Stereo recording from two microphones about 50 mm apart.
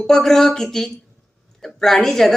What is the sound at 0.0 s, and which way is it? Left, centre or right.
A woman's voice, centre.